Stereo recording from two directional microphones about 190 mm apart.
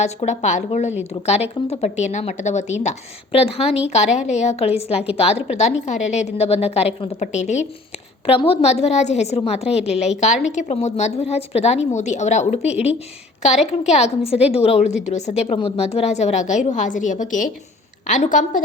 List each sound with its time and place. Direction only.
0.0 s a woman's voice: 35° left (ahead or behind)